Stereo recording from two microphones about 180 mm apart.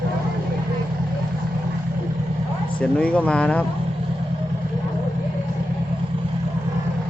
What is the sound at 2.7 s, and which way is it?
Speech, 5° left (ahead or behind).